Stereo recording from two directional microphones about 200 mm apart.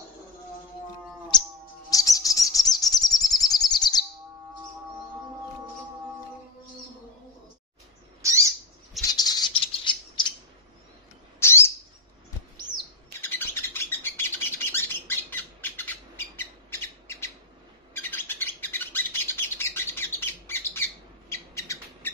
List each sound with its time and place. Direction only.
1.3 s a sound: 20° left (ahead or behind)
1.9 s chirp: 15° left (ahead or behind)
8.2 s owl: 15° right (ahead or behind)
9.1 s bird: 20° left (ahead or behind)
11.3 s owl: 15° left (ahead or behind)
13.2 s bird: 10° left (ahead or behind)
21.3 s owl: 15° left (ahead or behind)